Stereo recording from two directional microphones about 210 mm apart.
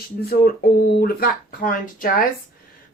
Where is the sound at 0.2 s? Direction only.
45° left (ahead or behind).